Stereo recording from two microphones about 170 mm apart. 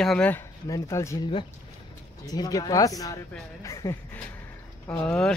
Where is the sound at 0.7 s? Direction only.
20° left (ahead or behind).